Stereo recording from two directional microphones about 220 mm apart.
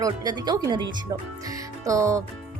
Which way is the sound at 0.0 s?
20° right (ahead or behind).